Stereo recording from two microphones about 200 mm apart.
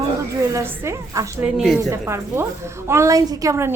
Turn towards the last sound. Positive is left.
turn(degrees=-15)  # may be behind; listen again after turning